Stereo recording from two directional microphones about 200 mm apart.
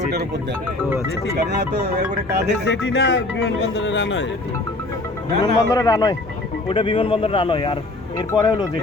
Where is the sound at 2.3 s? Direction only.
55° right (ahead or behind).